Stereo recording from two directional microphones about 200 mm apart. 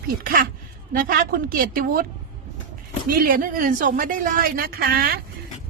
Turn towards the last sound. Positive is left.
turn(degrees=-50)  # may be behind; listen again after turning